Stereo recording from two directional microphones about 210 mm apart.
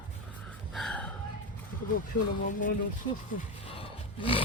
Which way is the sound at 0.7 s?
5° left (ahead or behind).